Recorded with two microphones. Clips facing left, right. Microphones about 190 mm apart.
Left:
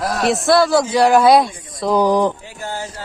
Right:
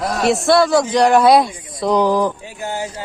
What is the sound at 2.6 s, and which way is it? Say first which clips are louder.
Speech: right 3 dB; 15° right (ahead or behind).